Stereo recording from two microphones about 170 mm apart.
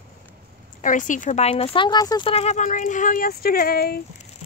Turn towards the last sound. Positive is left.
turn(degrees=60)  # may be behind; listen again after turning